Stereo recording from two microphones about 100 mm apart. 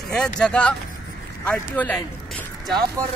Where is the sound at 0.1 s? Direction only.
10° left (ahead or behind).